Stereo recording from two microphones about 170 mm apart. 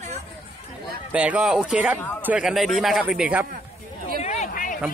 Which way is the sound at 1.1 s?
5° right (ahead or behind).